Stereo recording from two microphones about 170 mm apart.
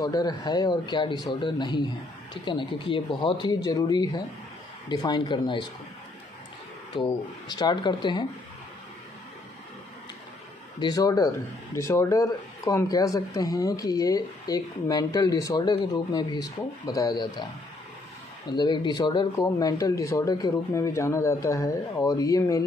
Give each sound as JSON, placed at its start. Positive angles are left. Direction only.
{"t": 0.0, "sound": "speech", "side_deg": 20}
{"t": 7.0, "sound": "speech", "side_deg": 25}
{"t": 10.8, "sound": "speech", "side_deg": 20}
{"t": 18.5, "sound": "speech", "side_deg": 25}